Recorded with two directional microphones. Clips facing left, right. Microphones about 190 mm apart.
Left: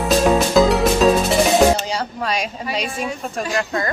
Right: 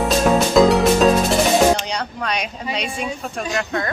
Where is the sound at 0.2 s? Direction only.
Centre (ahead or behind).